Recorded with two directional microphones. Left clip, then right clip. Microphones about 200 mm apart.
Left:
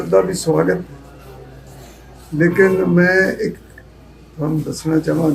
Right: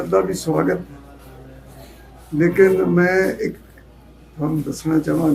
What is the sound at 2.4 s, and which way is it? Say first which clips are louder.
Speech: left 1 dB; 5° right (ahead or behind).